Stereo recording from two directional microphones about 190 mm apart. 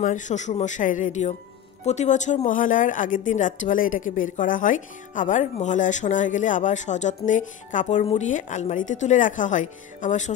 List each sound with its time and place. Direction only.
0.0 s speech: 40° left (ahead or behind)